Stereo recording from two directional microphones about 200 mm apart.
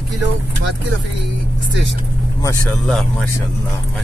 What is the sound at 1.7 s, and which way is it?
Speech, 65° right (ahead or behind).